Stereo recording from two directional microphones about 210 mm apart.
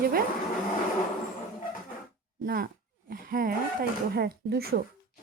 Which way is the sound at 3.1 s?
45° right (ahead or behind).